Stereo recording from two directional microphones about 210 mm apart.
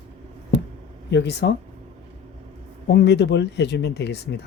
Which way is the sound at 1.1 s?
55° left (ahead or behind).